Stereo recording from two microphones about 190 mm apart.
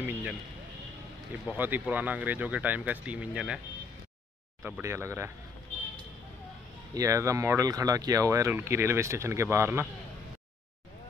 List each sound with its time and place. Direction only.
0.0 s a sound: 5° right (ahead or behind)
1.5 s speech: 10° right (ahead or behind)
4.6 s speech: 10° right (ahead or behind)
6.9 s speech: 15° right (ahead or behind)